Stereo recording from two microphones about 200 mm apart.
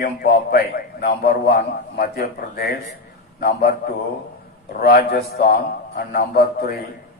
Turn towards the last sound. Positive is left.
turn(degrees=50)  # may be behind; listen again after turning